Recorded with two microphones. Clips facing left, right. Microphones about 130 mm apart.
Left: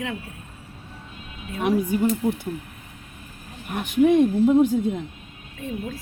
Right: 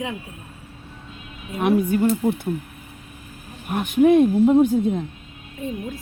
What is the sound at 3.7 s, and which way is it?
Speech, 55° right (ahead or behind).